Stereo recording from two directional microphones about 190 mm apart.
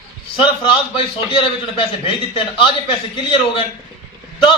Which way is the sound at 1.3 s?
25° left (ahead or behind).